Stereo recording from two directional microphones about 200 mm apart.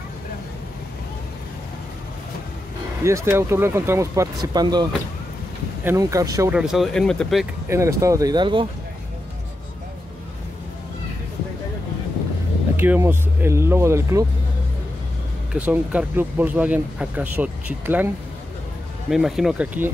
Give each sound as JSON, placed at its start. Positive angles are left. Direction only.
{"t": 3.0, "sound": "speech", "side_deg": -15}
{"t": 5.9, "sound": "speech", "side_deg": -15}
{"t": 6.5, "sound": "speech", "side_deg": 0}
{"t": 7.7, "sound": "speech", "side_deg": -15}
{"t": 12.7, "sound": "speech", "side_deg": -10}
{"t": 15.5, "sound": "speech", "side_deg": -5}